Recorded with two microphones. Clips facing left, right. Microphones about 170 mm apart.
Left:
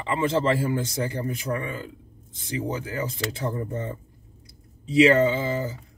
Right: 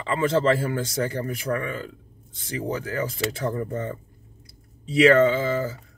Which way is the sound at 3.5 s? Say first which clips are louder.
Right 2 dB; 25° left (ahead or behind).